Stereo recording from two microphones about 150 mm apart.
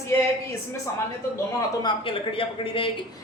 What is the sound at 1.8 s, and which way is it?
A man's voice, 35° left (ahead or behind).